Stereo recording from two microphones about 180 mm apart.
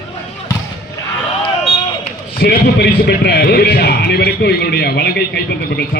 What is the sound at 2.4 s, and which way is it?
A man's voice, 60° left (ahead or behind).